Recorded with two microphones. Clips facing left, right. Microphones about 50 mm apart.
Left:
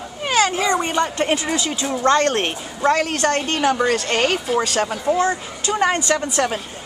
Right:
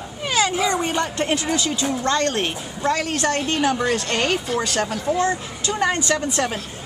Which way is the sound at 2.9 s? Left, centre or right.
Centre.